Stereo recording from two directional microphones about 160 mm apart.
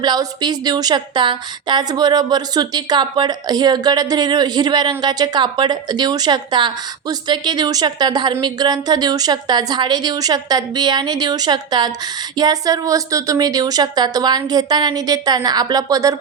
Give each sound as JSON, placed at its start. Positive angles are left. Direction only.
{"t": 0.0, "sound": "a woman's voice", "side_deg": -25}